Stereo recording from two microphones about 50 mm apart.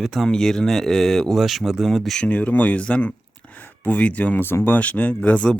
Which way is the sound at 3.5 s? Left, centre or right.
Left.